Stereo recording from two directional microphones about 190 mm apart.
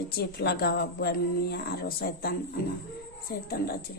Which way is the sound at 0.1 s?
55° left (ahead or behind).